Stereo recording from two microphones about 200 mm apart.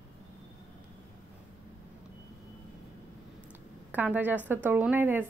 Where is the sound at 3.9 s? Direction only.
10° right (ahead or behind).